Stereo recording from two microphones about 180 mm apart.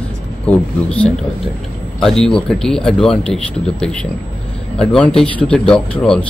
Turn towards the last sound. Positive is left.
turn(degrees=5)  # may be behind; listen again after turning